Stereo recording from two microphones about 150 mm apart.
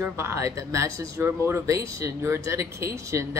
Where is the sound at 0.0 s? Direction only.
20° right (ahead or behind).